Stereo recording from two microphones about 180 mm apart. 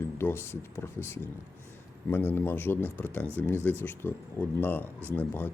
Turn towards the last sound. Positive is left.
turn(degrees=10)  # may be behind; listen again after turning